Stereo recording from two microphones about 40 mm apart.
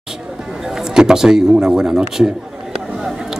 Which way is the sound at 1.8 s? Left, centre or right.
Right.